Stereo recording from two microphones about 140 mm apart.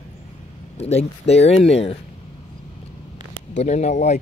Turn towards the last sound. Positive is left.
turn(degrees=55)  # may be behind; listen again after turning